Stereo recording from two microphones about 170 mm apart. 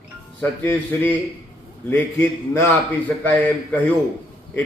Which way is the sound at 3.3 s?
10° left (ahead or behind).